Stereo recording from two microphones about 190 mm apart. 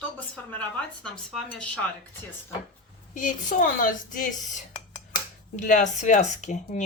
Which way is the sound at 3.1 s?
45° left (ahead or behind).